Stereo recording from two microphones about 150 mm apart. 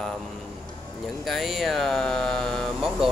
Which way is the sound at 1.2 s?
Centre (ahead or behind).